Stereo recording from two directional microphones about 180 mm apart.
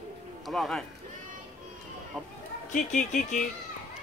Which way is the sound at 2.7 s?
45° left (ahead or behind).